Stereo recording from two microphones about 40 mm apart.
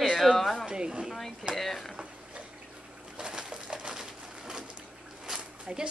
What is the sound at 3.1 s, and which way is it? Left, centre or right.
Pigeon, centre.